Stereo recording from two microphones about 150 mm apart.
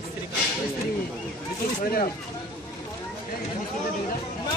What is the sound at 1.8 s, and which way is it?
Speech, 65° left (ahead or behind).